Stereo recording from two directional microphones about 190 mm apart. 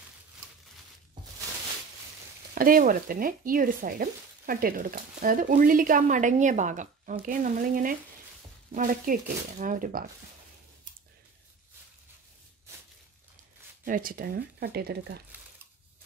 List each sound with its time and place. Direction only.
2.5 s speech: 45° right (ahead or behind)
13.8 s speech: 45° right (ahead or behind)